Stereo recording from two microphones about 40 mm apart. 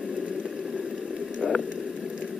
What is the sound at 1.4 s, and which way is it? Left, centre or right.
Boiling, centre.